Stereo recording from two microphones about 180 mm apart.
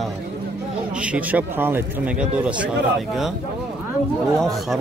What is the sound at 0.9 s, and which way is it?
Speech, 5° right (ahead or behind).